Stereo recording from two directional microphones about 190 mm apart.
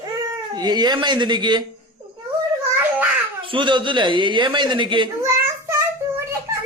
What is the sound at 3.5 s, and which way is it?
A child's voice, 25° right (ahead or behind).